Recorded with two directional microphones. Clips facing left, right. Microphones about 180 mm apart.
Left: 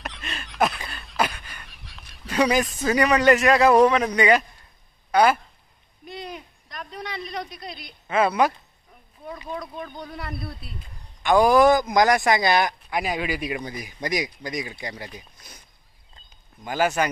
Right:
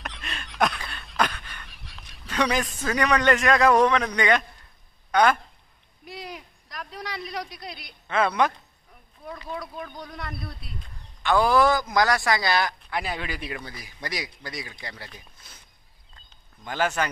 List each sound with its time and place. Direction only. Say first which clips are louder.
0.0 s a sound: left 2 dB; centre (ahead or behind)
5.1 s speech: left 2 dB; 5° left (ahead or behind)
6.0 s a sound: left 2 dB; centre (ahead or behind)
7.5 s a man's voice: left 2 dB; centre (ahead or behind); by 9.6 s 15° left (ahead or behind)
10.0 s a man's voice: left 3 dB; 5° left (ahead or behind)
11.2 s a man's voice: left 4 dB; 15° left (ahead or behind)